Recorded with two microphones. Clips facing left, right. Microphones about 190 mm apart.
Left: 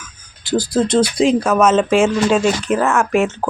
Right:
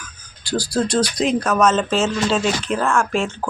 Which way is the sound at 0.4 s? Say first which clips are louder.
Left 4 dB; 20° left (ahead or behind).